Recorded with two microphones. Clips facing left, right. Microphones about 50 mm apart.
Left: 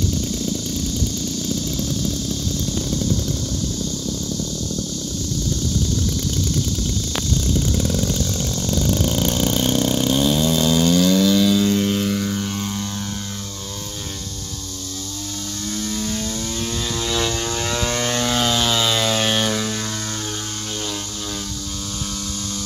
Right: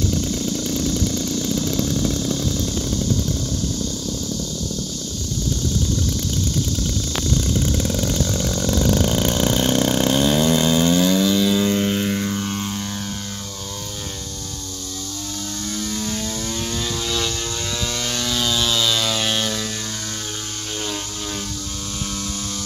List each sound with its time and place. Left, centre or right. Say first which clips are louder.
0.5 s vehicle: right 2 dB; right
2.0 s a sound: right 3 dB; right
7.5 s vehicle: even; centre
8.5 s vehicle: right 3 dB; right
8.7 s vehicle: right 1 dB; right; by 12.6 s centre
15.8 s vehicle: left 1 dB; centre
17.5 s vehicle: left 4 dB; left
18.6 s a sound: left 1 dB; left